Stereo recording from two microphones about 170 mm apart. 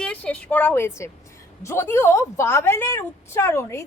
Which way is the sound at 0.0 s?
5° left (ahead or behind).